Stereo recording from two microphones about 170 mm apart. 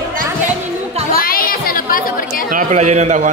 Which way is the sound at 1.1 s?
60° left (ahead or behind).